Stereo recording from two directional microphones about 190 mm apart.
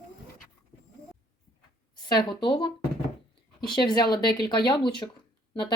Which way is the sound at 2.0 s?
25° left (ahead or behind).